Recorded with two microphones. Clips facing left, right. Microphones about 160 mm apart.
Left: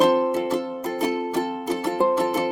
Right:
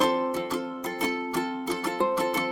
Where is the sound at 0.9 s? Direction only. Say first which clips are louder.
Left 6 dB; 45° left (ahead or behind).